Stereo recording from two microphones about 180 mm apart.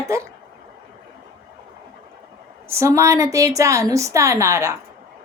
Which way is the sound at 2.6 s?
15° right (ahead or behind).